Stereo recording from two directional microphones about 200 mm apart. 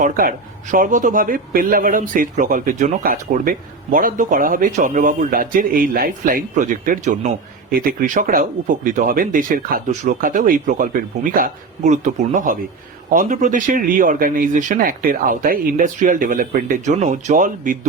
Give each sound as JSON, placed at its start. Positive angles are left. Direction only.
{"t": 0.0, "sound": "a man's voice", "side_deg": -40}